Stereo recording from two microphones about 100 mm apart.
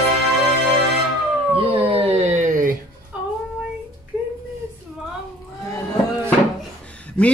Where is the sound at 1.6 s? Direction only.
70° right (ahead or behind); by 2.3 s 90° right.